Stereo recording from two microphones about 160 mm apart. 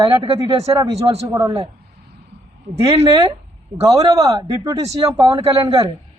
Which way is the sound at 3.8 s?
20° right (ahead or behind).